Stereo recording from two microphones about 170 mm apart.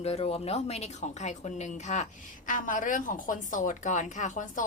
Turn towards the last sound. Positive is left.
turn(degrees=50)  # may be behind; listen again after turning